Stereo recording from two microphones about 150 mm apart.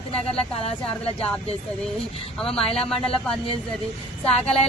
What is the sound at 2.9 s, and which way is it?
Speech, 5° left (ahead or behind).